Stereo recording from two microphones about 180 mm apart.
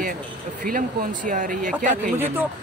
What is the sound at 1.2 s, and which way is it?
Speech, 45° right (ahead or behind).